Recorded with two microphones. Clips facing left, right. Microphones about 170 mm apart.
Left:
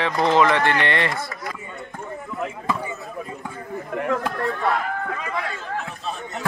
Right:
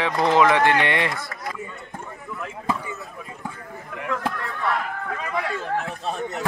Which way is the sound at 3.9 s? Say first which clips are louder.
Left 5 dB; 45° left (ahead or behind).